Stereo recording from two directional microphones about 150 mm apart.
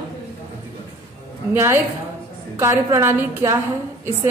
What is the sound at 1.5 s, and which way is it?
A woman's voice, 15° right (ahead or behind).